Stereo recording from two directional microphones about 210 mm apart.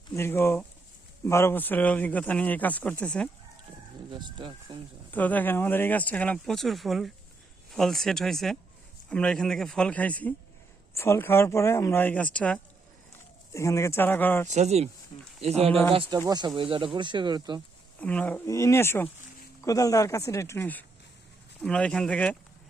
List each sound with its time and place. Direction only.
0.1 s a man's voice: 10° left (ahead or behind)
4.1 s speech: 20° right (ahead or behind)
5.1 s a man's voice: 10° left (ahead or behind)
14.4 s speech: 35° right (ahead or behind)
18.0 s a man's voice: 5° left (ahead or behind)